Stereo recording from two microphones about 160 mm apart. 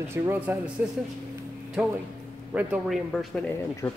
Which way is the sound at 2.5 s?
5° right (ahead or behind).